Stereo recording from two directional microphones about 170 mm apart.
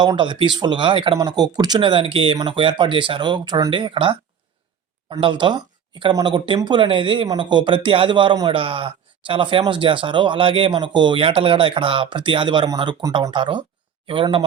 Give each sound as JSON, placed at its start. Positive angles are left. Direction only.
{"t": 0.0, "sound": "speech", "side_deg": -25}